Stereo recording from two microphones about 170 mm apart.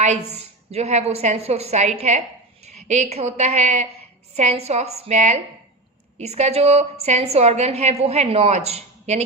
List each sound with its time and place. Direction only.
0.0 s a woman's voice: 40° right (ahead or behind)